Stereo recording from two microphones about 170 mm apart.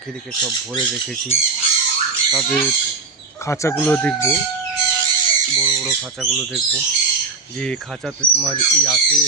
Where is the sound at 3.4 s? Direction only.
15° left (ahead or behind).